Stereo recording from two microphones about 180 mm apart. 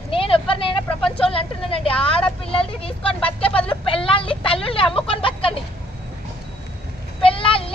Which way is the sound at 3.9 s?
30° left (ahead or behind).